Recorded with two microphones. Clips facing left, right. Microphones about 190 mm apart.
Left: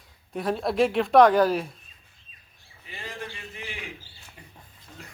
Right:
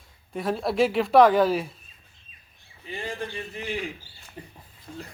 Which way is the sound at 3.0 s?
30° right (ahead or behind).